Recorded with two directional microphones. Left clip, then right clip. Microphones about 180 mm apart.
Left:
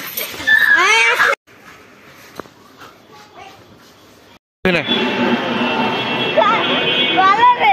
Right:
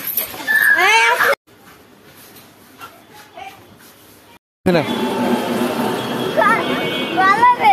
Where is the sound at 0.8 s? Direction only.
45° left (ahead or behind).